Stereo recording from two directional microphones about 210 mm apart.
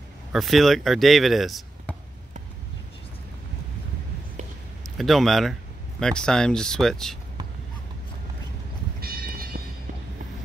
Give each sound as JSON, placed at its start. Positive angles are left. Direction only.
{"t": 0.3, "sound": "speech", "side_deg": 0}
{"t": 4.9, "sound": "speech", "side_deg": 0}
{"t": 9.0, "sound": "church bell", "side_deg": -45}